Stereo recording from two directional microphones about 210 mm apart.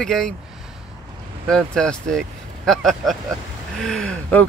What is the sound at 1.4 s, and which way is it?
Speech, 5° left (ahead or behind).